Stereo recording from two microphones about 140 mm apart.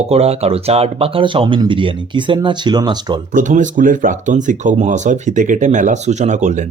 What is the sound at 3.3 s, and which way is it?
Speech, 65° right (ahead or behind).